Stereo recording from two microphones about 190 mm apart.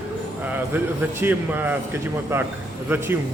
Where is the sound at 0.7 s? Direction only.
10° right (ahead or behind).